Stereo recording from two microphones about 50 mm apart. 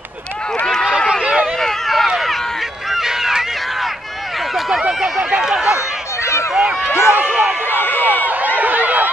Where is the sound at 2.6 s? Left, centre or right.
Centre.